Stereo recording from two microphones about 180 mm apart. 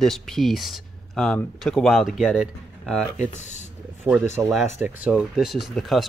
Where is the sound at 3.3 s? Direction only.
40° left (ahead or behind).